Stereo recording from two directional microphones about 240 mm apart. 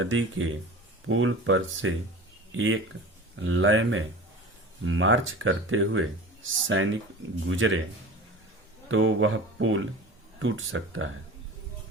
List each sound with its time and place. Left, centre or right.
0.0 s speech: right
8.9 s speech: right